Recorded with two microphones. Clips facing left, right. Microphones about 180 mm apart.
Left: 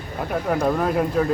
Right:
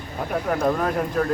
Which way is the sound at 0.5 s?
5° left (ahead or behind).